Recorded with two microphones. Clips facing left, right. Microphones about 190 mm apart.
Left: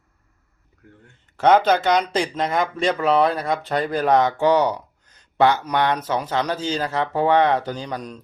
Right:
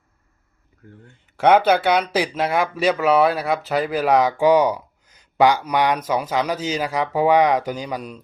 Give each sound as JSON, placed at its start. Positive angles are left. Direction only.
{"t": 1.0, "sound": "speech", "side_deg": -10}